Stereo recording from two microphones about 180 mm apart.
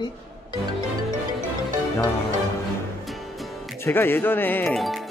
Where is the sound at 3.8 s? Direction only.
10° left (ahead or behind).